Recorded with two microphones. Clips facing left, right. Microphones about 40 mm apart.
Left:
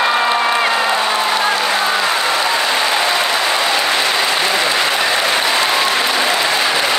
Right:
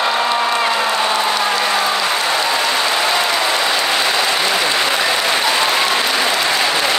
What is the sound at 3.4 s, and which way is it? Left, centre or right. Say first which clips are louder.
Applause: left 1 dB; centre.